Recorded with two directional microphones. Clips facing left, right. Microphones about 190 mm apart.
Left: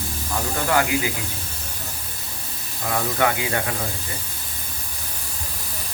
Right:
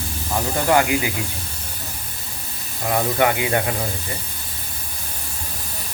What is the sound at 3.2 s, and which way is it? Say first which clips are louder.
Speech: right 3 dB; 20° right (ahead or behind).